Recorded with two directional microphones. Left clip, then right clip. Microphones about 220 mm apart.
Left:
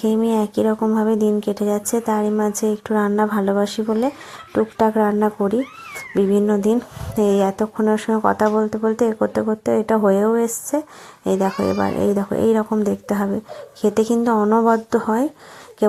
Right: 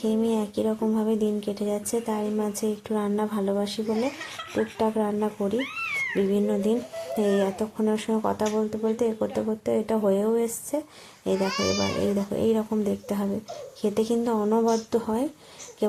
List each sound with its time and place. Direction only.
0.0 s speech: 20° left (ahead or behind)